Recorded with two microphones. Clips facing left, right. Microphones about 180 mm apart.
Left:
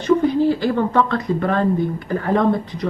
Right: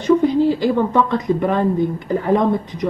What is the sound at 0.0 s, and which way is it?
Speech, 15° right (ahead or behind).